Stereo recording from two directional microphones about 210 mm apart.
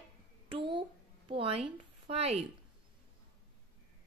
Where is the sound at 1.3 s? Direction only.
25° right (ahead or behind).